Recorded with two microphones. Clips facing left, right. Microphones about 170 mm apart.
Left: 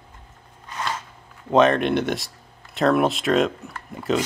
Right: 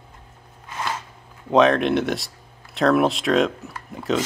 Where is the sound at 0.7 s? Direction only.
5° right (ahead or behind).